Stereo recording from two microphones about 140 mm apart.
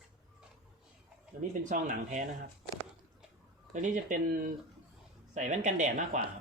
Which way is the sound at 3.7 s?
65° right (ahead or behind).